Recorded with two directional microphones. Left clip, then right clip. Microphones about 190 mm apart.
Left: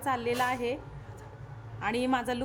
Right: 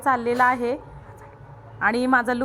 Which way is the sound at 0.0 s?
15° right (ahead or behind).